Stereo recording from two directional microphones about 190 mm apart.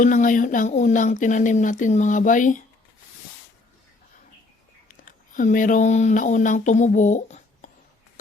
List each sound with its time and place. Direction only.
0.0 s speech: 45° left (ahead or behind)
4.9 s speech: 45° left (ahead or behind)